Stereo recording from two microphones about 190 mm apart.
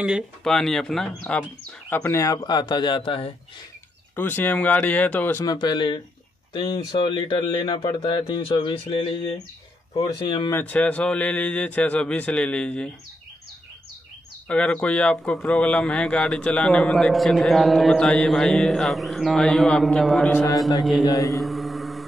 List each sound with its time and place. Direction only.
0.0 s speech: centre (ahead or behind); by 3.3 s 30° left (ahead or behind)
4.1 s a man's voice: 10° left (ahead or behind)
5.4 s speech: 20° left (ahead or behind)
10.6 s a man's voice: 10° left (ahead or behind)
14.5 s speech: 5° left (ahead or behind)
21.3 s mantra: centre (ahead or behind)